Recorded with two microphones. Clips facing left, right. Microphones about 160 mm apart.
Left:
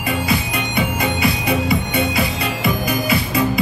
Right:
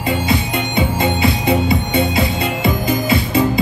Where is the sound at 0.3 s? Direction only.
25° right (ahead or behind).